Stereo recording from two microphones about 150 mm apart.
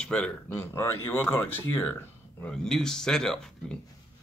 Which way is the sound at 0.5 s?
15° left (ahead or behind).